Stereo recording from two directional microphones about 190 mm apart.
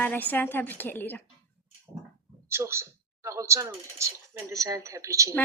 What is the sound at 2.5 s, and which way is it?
Speech, 15° right (ahead or behind).